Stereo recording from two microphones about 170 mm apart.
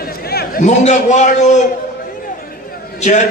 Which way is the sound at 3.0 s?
45° left (ahead or behind).